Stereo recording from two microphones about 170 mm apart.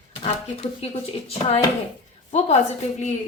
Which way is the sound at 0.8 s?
35° left (ahead or behind).